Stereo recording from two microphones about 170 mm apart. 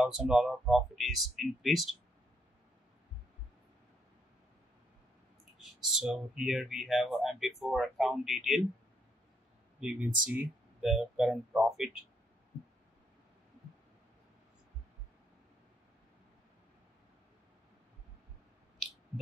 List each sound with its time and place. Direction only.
0.0 s speech: 5° right (ahead or behind)
5.9 s speech: centre (ahead or behind)
9.8 s speech: 5° right (ahead or behind)